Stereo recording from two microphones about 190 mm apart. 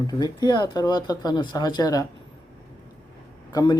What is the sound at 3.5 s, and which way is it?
Speech, 20° left (ahead or behind).